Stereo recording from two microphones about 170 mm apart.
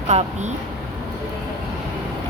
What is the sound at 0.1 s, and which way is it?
Speech, 40° right (ahead or behind).